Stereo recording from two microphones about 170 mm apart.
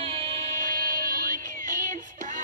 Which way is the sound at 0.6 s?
55° right (ahead or behind).